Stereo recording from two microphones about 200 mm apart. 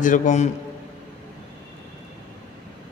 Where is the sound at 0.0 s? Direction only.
40° left (ahead or behind).